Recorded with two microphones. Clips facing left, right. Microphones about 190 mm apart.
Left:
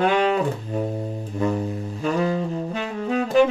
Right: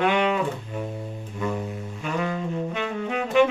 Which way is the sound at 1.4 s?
35° left (ahead or behind).